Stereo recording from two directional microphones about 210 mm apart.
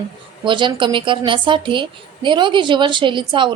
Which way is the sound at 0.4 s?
20° right (ahead or behind).